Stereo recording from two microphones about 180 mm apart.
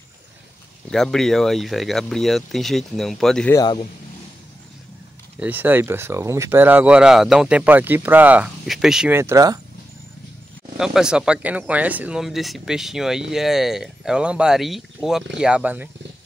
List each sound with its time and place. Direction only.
0.8 s speech: centre (ahead or behind)
3.5 s a man's voice: 25° left (ahead or behind)
5.4 s speech: 10° right (ahead or behind)
10.8 s speech: 5° right (ahead or behind)